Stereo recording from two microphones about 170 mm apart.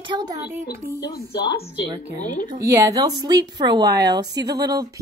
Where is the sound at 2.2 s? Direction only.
45° left (ahead or behind).